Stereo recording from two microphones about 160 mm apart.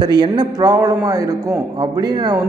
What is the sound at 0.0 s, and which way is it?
A man's voice, 25° right (ahead or behind).